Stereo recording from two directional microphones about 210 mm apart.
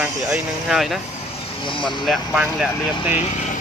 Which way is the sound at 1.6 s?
25° left (ahead or behind).